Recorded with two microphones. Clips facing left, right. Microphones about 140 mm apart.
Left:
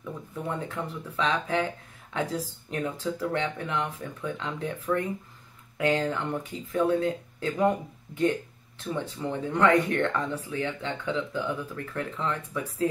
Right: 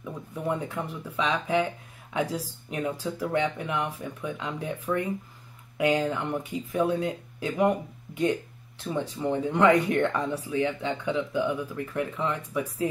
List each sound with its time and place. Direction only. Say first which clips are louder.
0.0 s speech: right 2 dB; 10° right (ahead or behind)